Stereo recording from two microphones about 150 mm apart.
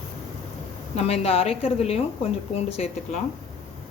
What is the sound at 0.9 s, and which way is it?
A woman's voice, 45° left (ahead or behind).